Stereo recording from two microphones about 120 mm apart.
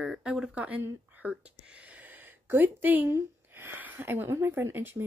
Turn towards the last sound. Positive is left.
turn(degrees=-20)  # may be behind; listen again after turning